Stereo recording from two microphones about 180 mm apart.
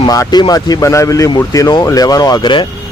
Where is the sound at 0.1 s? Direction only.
20° left (ahead or behind).